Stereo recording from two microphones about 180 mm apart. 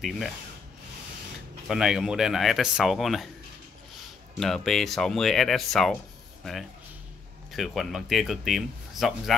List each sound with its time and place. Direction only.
1.7 s speech: centre (ahead or behind)
4.4 s speech: centre (ahead or behind)
7.5 s speech: centre (ahead or behind)